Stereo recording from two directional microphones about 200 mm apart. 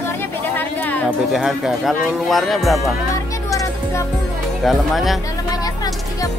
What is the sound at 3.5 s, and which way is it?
Music, 15° left (ahead or behind).